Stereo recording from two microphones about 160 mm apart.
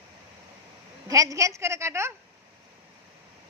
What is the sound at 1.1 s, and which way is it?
A woman's voice, 20° right (ahead or behind).